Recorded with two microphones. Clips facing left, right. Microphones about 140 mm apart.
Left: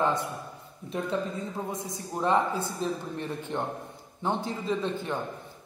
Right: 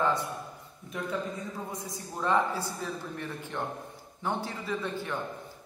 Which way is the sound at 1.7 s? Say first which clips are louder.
Left 4 dB; 20° left (ahead or behind).